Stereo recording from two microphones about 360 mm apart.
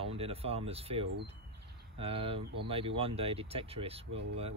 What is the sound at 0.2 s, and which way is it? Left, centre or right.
Speech, centre.